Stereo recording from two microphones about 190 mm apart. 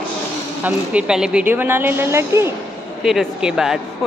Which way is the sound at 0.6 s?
5° right (ahead or behind).